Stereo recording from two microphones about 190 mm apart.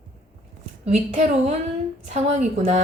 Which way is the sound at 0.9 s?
35° right (ahead or behind).